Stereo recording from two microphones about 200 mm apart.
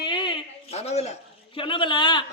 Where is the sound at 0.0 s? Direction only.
25° left (ahead or behind).